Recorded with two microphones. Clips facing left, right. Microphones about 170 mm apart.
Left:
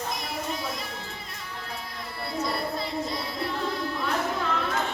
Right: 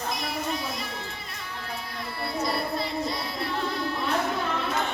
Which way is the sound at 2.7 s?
70° right (ahead or behind).